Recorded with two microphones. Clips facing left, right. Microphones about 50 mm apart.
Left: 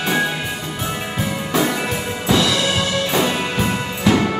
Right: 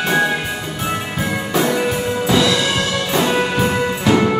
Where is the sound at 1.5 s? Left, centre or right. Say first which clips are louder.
Right 2 dB; centre.